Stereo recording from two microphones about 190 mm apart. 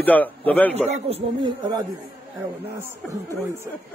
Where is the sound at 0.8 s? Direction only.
35° right (ahead or behind).